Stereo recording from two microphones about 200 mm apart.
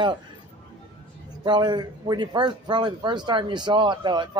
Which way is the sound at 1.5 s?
20° right (ahead or behind).